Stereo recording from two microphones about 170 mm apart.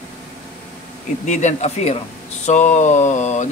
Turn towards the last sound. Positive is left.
turn(degrees=45)  # may be behind; listen again after turning